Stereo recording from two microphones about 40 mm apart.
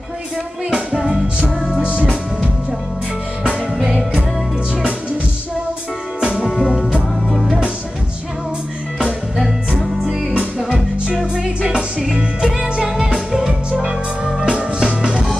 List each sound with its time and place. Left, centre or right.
0.7 s music: right
6.4 s music: centre
9.9 s music: right
12.2 s music: centre